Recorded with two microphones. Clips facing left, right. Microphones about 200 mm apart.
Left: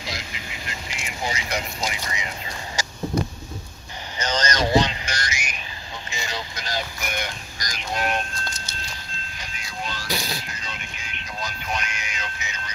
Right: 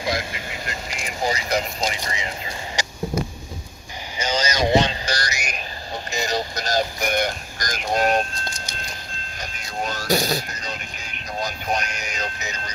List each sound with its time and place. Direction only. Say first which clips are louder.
0.0 s speech: right 9 dB; 55° right (ahead or behind)
1.0 s speech: right 5 dB; 35° right (ahead or behind)
4.2 s vehicle: right 1 dB; 10° right (ahead or behind)
4.6 s music: right 3 dB; 25° right (ahead or behind)
6.0 s a sound: right 8 dB; 40° right (ahead or behind)
9.4 s music: right 6 dB; 45° right (ahead or behind)